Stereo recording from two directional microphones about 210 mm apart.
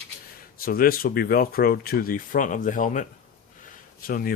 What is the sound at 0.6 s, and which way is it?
Speech, 45° left (ahead or behind).